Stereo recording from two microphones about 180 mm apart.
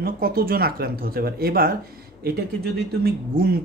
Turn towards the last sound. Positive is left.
turn(degrees=-60)  # may be behind; listen again after turning